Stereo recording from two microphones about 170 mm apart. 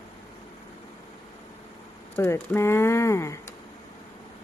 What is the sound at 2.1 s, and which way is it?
Speech, 15° left (ahead or behind).